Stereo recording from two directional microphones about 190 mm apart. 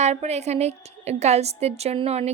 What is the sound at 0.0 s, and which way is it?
A woman's voice, 35° right (ahead or behind).